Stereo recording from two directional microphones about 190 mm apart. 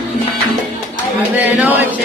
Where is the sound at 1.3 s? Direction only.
10° right (ahead or behind).